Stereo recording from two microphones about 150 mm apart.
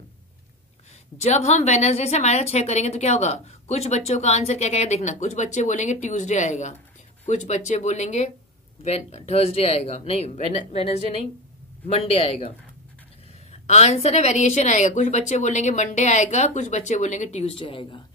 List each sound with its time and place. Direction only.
1.1 s a woman's voice: 45° left (ahead or behind)